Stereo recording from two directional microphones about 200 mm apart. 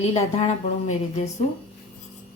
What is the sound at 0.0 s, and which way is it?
A woman's voice, 30° left (ahead or behind).